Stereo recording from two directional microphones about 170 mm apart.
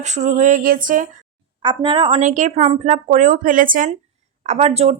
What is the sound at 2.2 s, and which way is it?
Speech, 45° right (ahead or behind).